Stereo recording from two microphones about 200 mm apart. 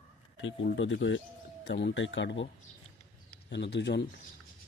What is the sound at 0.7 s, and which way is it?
Speech, 70° left (ahead or behind).